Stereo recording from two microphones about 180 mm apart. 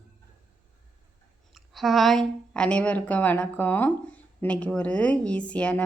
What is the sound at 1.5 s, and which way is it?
A woman's voice, centre (ahead or behind).